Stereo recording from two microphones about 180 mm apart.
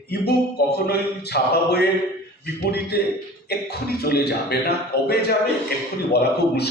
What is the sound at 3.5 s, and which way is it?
A man's voice, 60° left (ahead or behind).